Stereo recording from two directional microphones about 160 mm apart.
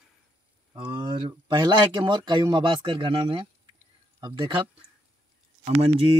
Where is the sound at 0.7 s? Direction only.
30° right (ahead or behind).